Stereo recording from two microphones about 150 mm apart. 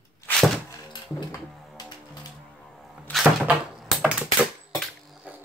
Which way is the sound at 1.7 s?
25° left (ahead or behind).